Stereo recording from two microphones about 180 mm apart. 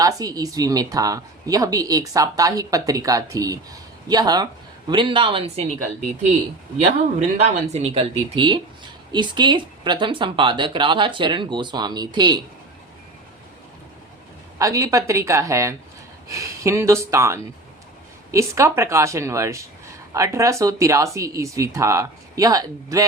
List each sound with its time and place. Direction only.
0.0 s speech: 20° right (ahead or behind)
7.2 s speech: 35° right (ahead or behind)
14.6 s speech: 20° right (ahead or behind)